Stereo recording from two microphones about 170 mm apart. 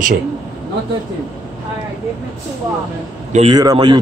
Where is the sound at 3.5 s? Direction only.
25° right (ahead or behind).